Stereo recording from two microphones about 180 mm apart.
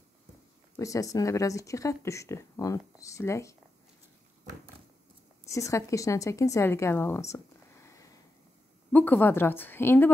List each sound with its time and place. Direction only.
0.7 s speech: 20° left (ahead or behind)
5.5 s speech: 15° left (ahead or behind)